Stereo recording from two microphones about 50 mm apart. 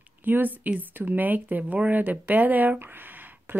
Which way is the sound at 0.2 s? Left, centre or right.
Right.